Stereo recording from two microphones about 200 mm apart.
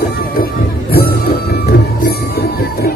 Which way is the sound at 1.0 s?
50° left (ahead or behind).